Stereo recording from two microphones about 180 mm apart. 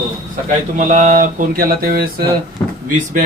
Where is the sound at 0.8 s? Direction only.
45° right (ahead or behind).